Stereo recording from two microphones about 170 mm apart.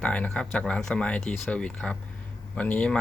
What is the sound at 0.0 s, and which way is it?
Speech, 5° left (ahead or behind).